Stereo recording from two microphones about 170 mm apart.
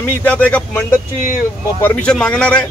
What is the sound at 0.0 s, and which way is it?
A man's voice, 10° left (ahead or behind).